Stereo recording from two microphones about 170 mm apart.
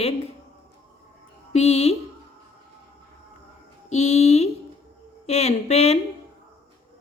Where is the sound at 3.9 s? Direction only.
40° left (ahead or behind).